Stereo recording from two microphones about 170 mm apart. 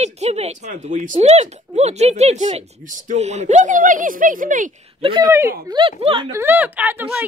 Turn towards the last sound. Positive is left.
turn(degrees=-10)  # may be behind; listen again after turning